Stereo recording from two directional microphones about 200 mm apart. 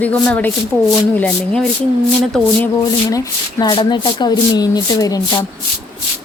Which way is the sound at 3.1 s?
20° left (ahead or behind).